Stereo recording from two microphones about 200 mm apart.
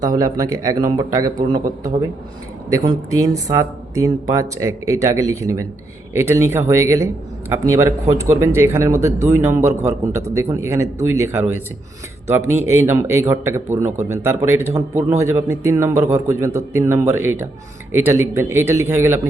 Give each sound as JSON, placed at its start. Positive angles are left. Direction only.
{"t": 0.0, "sound": "a man's voice", "side_deg": -15}